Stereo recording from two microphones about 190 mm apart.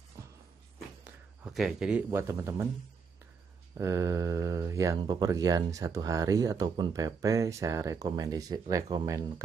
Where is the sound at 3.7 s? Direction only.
15° right (ahead or behind).